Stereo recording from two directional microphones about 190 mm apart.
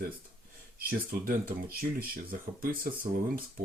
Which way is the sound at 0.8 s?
50° right (ahead or behind).